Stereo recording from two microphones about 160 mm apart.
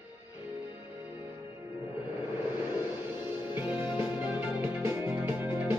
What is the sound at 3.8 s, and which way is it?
Music, 10° right (ahead or behind).